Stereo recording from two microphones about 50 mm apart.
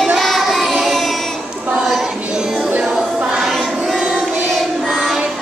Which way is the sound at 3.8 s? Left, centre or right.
Centre.